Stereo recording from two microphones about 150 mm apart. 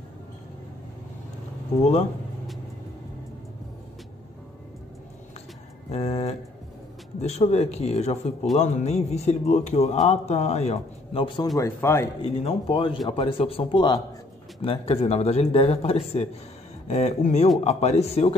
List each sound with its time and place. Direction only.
5.9 s speech: 45° left (ahead or behind)
11.5 s speech: 20° left (ahead or behind)
12.2 s a man's voice: 35° left (ahead or behind)